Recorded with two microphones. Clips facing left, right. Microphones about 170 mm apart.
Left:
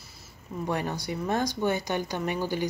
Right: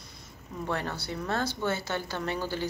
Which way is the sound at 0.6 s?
15° left (ahead or behind).